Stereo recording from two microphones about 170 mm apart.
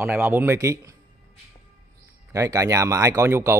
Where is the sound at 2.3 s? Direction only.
20° right (ahead or behind).